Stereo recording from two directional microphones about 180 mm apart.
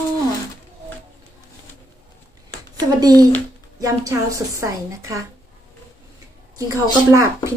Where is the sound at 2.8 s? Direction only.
20° right (ahead or behind).